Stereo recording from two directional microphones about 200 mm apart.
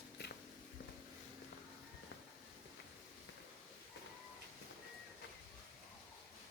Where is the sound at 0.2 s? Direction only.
55° left (ahead or behind).